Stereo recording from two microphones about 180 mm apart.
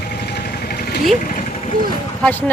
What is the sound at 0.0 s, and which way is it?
Vehicle, 60° left (ahead or behind).